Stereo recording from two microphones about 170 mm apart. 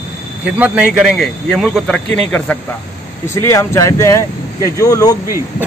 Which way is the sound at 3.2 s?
15° left (ahead or behind).